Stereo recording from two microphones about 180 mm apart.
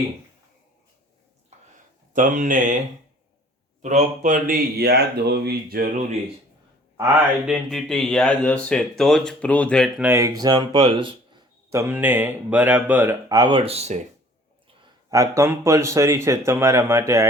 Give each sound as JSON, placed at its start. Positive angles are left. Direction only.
{"t": 2.1, "sound": "speech", "side_deg": -45}
{"t": 3.8, "sound": "speech", "side_deg": -40}
{"t": 6.9, "sound": "a man's voice", "side_deg": -15}
{"t": 7.4, "sound": "speech", "side_deg": 0}
{"t": 10.1, "sound": "speech", "side_deg": -15}
{"t": 11.7, "sound": "speech", "side_deg": -15}
{"t": 15.1, "sound": "speech", "side_deg": -15}